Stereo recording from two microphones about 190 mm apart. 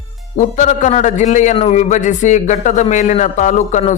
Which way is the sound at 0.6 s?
40° left (ahead or behind).